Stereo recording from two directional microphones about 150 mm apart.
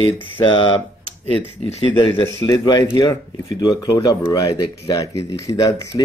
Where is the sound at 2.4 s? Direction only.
25° left (ahead or behind).